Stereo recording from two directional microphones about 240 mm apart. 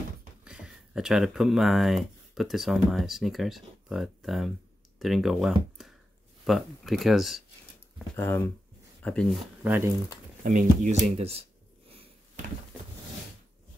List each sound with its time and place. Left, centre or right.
0.5 s speech: centre
9.0 s speech: centre
9.6 s speech: centre
10.4 s speech: right